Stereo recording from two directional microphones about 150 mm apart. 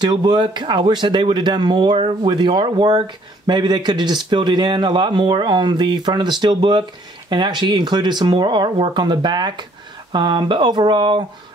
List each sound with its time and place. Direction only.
0.0 s speech: 30° right (ahead or behind)